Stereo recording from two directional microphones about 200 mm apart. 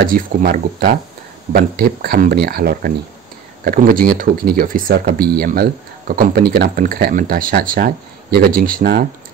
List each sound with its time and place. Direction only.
0.0 s speech: 45° right (ahead or behind)